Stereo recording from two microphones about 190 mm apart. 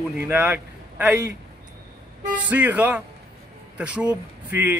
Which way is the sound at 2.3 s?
10° right (ahead or behind).